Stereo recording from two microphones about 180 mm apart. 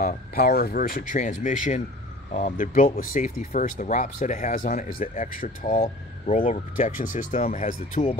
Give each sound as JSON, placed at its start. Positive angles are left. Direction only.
{"t": 0.0, "sound": "speech", "side_deg": 55}
{"t": 0.9, "sound": "speech", "side_deg": 45}